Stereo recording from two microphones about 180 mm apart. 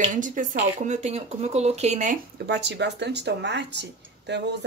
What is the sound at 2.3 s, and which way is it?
Speech, 70° right (ahead or behind).